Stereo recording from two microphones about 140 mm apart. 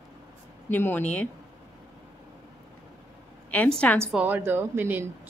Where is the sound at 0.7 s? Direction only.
15° left (ahead or behind).